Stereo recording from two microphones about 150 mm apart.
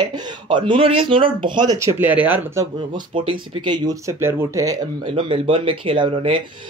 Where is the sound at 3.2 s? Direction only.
30° right (ahead or behind).